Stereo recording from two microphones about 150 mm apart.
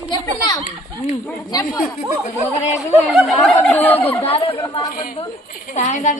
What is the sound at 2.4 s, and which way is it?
Speech, 50° left (ahead or behind).